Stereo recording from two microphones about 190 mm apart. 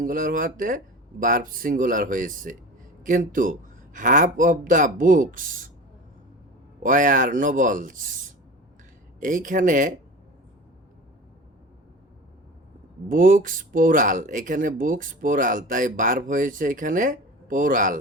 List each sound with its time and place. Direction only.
0.0 s speech: 45° right (ahead or behind)
6.8 s speech: 45° right (ahead or behind)
9.2 s speech: 45° right (ahead or behind)
13.1 s speech: 45° right (ahead or behind)